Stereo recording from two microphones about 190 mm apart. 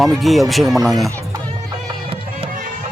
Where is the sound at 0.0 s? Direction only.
Centre (ahead or behind).